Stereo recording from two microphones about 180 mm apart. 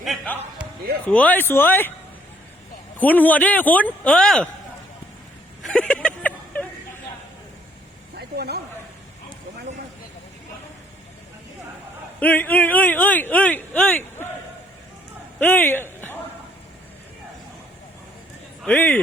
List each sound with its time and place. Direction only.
0.0 s music: centre (ahead or behind)
1.0 s speech: 10° left (ahead or behind)
3.0 s speech: 10° left (ahead or behind)
5.6 s a sound: 5° left (ahead or behind)
8.1 s vehicle: 60° right (ahead or behind)
12.2 s speech: 10° left (ahead or behind)
15.4 s speech: 10° left (ahead or behind)
18.6 s speech: 10° left (ahead or behind)